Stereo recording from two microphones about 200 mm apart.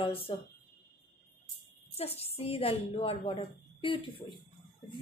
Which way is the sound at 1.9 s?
30° left (ahead or behind).